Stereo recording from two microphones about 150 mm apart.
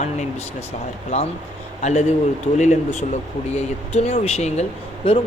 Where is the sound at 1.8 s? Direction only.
50° left (ahead or behind).